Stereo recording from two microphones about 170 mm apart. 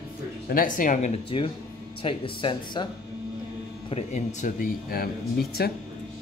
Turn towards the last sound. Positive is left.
turn(degrees=65)  # may be behind; listen again after turning